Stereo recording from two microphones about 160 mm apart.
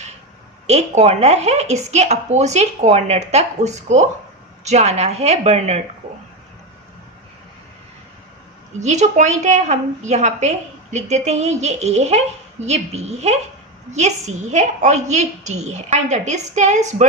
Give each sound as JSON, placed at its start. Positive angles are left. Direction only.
{"t": 0.7, "sound": "speech", "side_deg": -40}
{"t": 8.8, "sound": "speech", "side_deg": -45}